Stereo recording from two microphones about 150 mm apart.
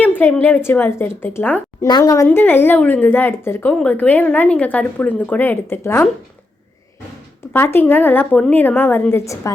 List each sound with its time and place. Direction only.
0.0 s a woman's voice: 10° left (ahead or behind)
1.9 s a woman's voice: 25° left (ahead or behind)
2.2 s a woman's voice: 15° left (ahead or behind)
7.5 s a woman's voice: 15° left (ahead or behind)